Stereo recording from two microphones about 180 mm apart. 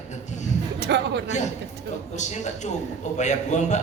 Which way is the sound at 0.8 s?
70° right (ahead or behind).